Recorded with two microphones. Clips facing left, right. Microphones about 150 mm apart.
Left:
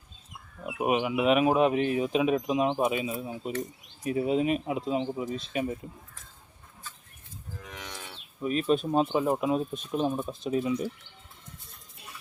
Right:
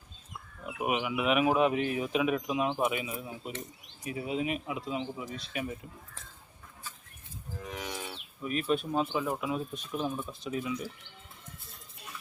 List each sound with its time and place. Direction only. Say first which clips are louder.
0.8 s speech: left 5 dB; 30° left (ahead or behind)
7.8 s livestock: right 4 dB; 10° right (ahead or behind)
8.4 s speech: left 4 dB; 30° left (ahead or behind)